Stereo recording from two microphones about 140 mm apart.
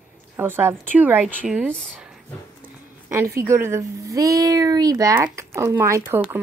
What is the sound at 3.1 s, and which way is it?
A woman's voice, 20° right (ahead or behind).